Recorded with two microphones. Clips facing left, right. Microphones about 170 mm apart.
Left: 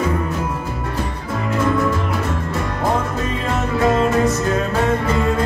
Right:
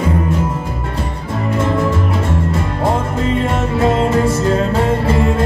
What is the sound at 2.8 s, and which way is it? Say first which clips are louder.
Music: right 3 dB; 25° right (ahead or behind).